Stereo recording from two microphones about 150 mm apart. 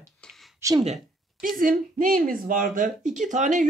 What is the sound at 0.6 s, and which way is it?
Speech, 20° right (ahead or behind).